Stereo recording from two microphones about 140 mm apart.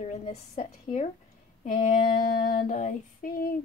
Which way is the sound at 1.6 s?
65° left (ahead or behind).